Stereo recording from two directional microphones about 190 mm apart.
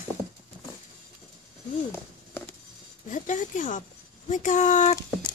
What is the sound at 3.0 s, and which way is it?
A woman's voice, 40° left (ahead or behind).